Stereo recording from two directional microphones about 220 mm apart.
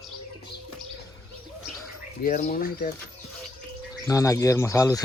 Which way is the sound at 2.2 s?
35° left (ahead or behind).